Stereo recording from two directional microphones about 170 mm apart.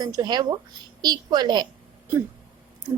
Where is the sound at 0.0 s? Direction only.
20° right (ahead or behind).